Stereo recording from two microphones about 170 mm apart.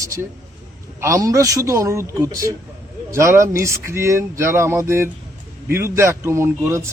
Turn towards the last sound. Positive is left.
turn(degrees=-15)  # may be behind; listen again after turning